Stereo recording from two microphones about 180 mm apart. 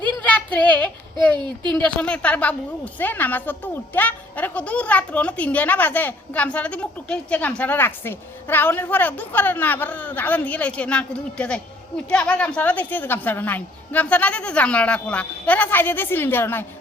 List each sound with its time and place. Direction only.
0.3 s child singing: 5° left (ahead or behind)
1.4 s speech: 25° right (ahead or behind)
1.8 s a woman's voice: 5° left (ahead or behind)